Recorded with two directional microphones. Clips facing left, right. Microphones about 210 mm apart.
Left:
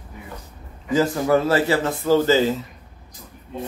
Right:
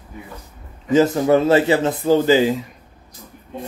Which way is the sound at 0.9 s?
20° right (ahead or behind).